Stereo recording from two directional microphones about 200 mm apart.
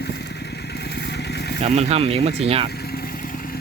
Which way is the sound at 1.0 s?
55° left (ahead or behind).